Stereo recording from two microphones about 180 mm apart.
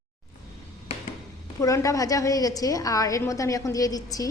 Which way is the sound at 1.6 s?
20° left (ahead or behind).